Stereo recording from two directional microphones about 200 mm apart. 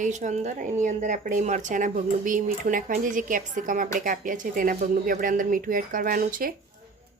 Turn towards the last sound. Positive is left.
turn(degrees=-45)  # may be behind; listen again after turning